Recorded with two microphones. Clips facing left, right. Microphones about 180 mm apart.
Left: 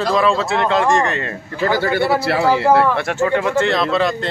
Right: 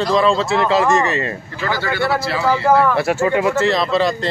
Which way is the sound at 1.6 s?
45° left (ahead or behind).